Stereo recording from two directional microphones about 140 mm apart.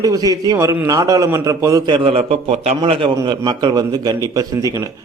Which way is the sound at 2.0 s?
40° right (ahead or behind).